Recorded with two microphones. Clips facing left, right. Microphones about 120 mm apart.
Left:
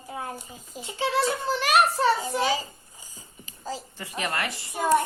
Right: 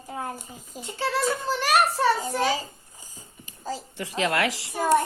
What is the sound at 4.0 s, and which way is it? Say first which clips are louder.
Speech: right 7 dB; 90° right.